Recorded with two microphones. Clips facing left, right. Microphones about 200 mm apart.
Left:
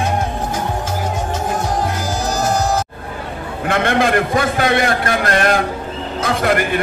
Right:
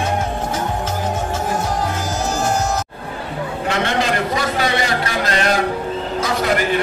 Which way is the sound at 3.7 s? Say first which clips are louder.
Left 4 dB; 55° left (ahead or behind).